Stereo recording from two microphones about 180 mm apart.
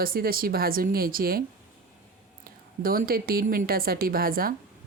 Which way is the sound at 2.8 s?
55° right (ahead or behind).